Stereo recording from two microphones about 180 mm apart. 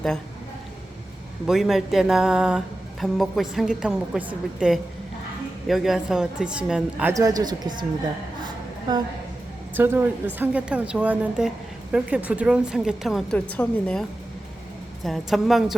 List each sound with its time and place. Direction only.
1.5 s a woman's voice: centre (ahead or behind)
7.1 s speech: 20° right (ahead or behind)
9.7 s a woman's voice: 10° right (ahead or behind); by 14.0 s 5° left (ahead or behind)
15.0 s a woman's voice: centre (ahead or behind)